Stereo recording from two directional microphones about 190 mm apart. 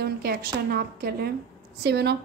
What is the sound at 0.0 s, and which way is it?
A woman's voice, 55° right (ahead or behind).